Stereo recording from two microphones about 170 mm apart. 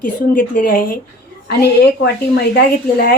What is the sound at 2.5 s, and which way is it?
Speech, 60° left (ahead or behind).